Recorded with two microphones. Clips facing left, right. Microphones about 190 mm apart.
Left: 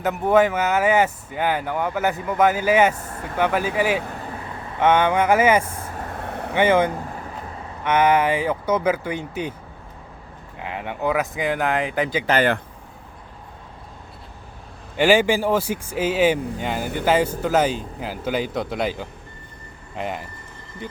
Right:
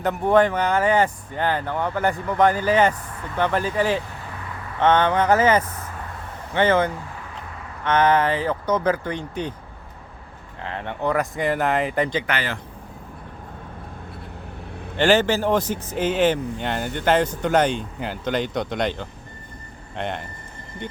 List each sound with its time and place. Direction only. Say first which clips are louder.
0.0 s speech: even; 5° left (ahead or behind)
5.6 s speech: left 2 dB; 30° left (ahead or behind)
6.2 s vehicle: left 7 dB; 70° left (ahead or behind)
6.5 s speech: left 1 dB; 10° left (ahead or behind)
10.6 s speech: left 1 dB; 10° left (ahead or behind)
14.9 s speech: left 1 dB; 10° left (ahead or behind)